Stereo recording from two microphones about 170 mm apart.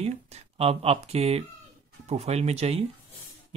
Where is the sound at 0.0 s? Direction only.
40° right (ahead or behind).